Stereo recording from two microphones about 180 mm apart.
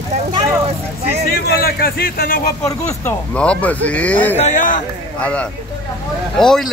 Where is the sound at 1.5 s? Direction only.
55° left (ahead or behind).